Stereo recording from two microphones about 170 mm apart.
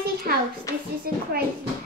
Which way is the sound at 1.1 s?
60° right (ahead or behind).